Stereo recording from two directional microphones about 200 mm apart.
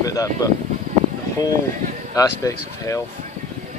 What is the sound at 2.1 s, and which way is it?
Speech, 15° left (ahead or behind).